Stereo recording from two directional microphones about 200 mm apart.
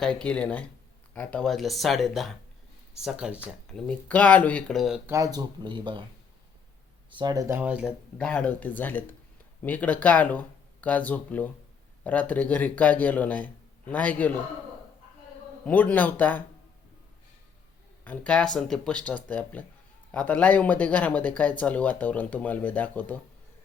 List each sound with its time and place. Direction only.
0.0 s speech: 5° left (ahead or behind)
5.0 s speech: 15° right (ahead or behind)
7.1 s speech: 20° right (ahead or behind); by 14.4 s 10° left (ahead or behind)
15.6 s speech: 10° left (ahead or behind)
18.0 s speech: 5° left (ahead or behind)